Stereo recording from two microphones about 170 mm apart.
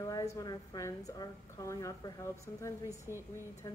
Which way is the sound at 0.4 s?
20° left (ahead or behind).